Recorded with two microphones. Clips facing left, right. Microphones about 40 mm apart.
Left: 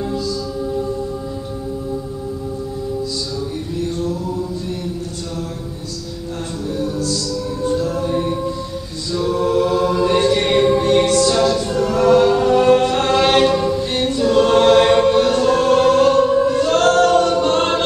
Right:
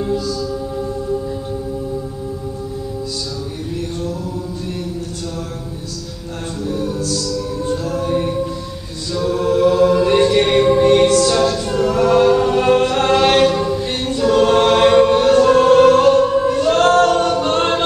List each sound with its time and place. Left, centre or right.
7.8 s music: right
9.3 s a capella: centre
10.8 s music: centre
11.4 s choir: centre
15.2 s music: centre
16.2 s choir: centre
16.8 s a capella: centre